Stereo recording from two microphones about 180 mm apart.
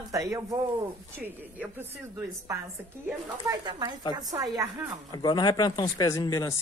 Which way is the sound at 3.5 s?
25° right (ahead or behind).